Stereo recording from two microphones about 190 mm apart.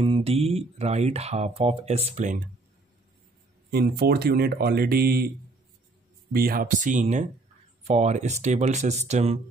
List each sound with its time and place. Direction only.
0.0 s speech: 30° right (ahead or behind)
3.7 s speech: 55° right (ahead or behind)
6.3 s speech: 50° right (ahead or behind); by 9.4 s 35° right (ahead or behind)